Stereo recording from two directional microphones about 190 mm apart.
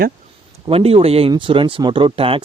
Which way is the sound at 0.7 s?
30° right (ahead or behind).